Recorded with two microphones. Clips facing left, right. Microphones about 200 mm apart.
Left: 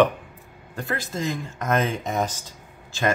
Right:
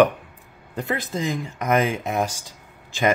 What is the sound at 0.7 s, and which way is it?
A man's voice, 20° right (ahead or behind).